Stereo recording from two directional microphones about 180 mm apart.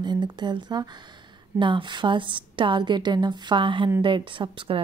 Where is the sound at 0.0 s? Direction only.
25° right (ahead or behind).